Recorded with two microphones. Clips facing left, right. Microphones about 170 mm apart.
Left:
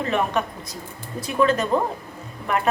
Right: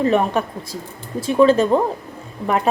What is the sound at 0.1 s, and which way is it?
Speech, 35° right (ahead or behind).